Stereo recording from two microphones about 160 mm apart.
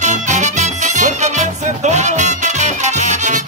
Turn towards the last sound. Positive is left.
turn(degrees=-50)  # may be behind; listen again after turning